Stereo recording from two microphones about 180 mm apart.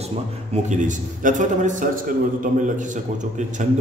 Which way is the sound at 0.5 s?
40° right (ahead or behind).